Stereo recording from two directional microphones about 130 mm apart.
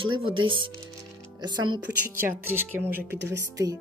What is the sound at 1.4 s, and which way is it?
Speech, 35° right (ahead or behind).